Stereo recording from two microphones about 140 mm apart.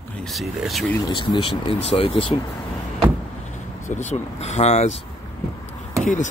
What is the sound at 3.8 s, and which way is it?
Speech, 55° left (ahead or behind).